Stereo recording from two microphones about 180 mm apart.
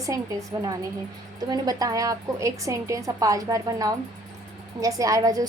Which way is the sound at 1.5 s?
20° right (ahead or behind).